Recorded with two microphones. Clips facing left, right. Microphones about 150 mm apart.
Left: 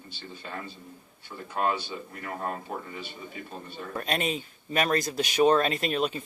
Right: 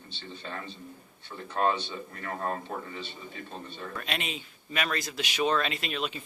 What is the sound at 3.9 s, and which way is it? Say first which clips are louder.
Speech: left 7 dB; 40° left (ahead or behind).